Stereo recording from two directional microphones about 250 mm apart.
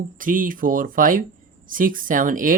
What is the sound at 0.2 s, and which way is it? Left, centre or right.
Speech, right.